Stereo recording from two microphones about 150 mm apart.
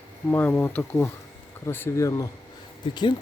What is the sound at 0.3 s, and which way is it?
Speech, 10° left (ahead or behind).